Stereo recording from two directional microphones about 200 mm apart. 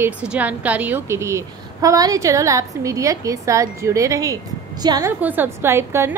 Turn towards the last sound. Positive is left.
turn(degrees=-10)  # may be behind; listen again after turning